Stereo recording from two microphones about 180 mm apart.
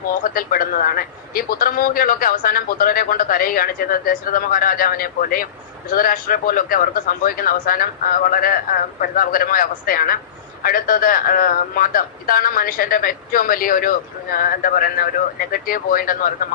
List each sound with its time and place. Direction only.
0.3 s a man's voice: 50° left (ahead or behind)